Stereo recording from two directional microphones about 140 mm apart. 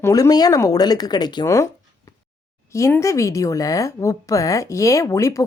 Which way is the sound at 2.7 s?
20° left (ahead or behind).